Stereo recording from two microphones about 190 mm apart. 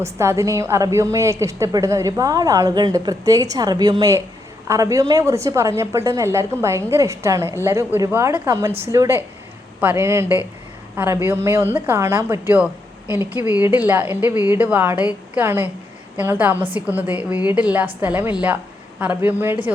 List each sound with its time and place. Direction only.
0.0 s a woman's voice: 15° right (ahead or behind)